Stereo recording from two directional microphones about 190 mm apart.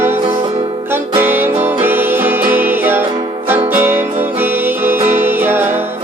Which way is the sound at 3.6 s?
10° right (ahead or behind).